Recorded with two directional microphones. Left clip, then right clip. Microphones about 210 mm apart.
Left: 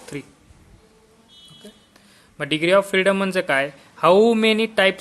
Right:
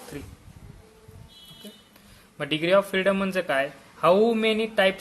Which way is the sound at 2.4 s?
25° left (ahead or behind).